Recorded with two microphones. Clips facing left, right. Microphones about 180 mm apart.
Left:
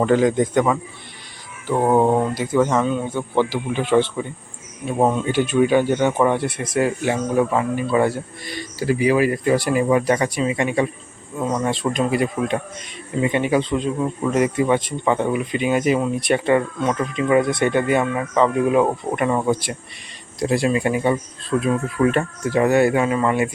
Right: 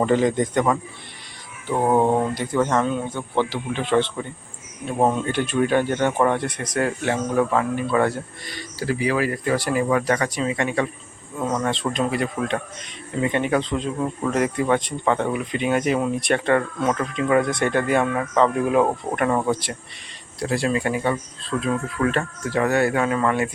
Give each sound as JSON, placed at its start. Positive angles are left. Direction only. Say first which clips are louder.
{"t": 0.0, "sound": "speech", "louder": "left 2 dB", "side_deg": 0}